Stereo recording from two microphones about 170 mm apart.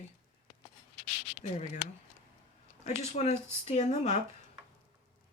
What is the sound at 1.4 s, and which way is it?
Speech, 40° left (ahead or behind).